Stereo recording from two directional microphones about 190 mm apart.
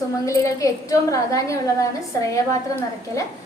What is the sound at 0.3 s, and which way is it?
A woman's voice, 15° left (ahead or behind).